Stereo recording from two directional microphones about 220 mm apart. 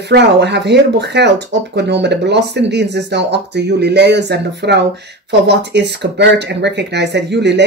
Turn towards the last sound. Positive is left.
turn(degrees=-50)  # may be behind; listen again after turning